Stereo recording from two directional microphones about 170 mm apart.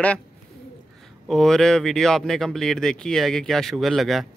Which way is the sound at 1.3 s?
Centre (ahead or behind).